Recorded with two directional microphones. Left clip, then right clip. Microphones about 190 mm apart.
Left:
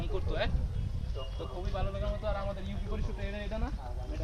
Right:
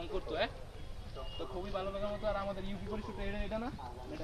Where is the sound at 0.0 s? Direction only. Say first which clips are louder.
Left 1 dB; centre (ahead or behind).